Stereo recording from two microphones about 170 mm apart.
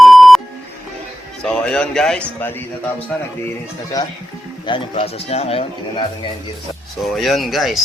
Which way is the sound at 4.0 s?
20° left (ahead or behind).